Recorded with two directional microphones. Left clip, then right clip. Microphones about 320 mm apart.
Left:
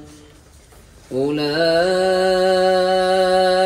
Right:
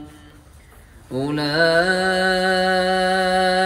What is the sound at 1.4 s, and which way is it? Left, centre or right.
Mantra, right.